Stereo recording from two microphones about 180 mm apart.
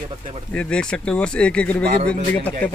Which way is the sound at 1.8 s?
60° right (ahead or behind).